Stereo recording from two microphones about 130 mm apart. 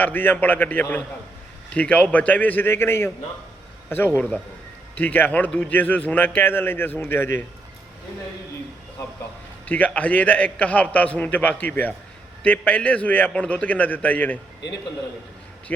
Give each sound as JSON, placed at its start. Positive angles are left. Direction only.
{"t": 0.0, "sound": "a man's voice", "side_deg": 15}
{"t": 9.6, "sound": "a man's voice", "side_deg": 10}